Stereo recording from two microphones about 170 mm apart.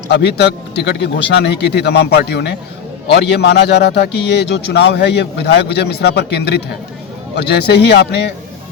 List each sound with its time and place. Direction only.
0.1 s speech: 75° left (ahead or behind)
3.1 s a man's voice: 90° left